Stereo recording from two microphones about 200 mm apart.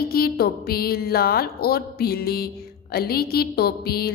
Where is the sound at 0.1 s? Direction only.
50° left (ahead or behind).